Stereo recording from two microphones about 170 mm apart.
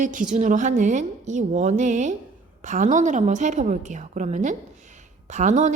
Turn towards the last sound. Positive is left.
turn(degrees=-45)  # may be behind; listen again after turning